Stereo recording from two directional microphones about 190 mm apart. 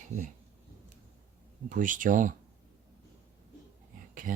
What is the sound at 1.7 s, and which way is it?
Rub, 45° right (ahead or behind).